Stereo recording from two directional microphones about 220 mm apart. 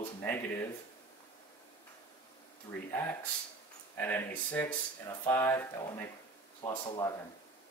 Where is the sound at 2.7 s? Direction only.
20° left (ahead or behind).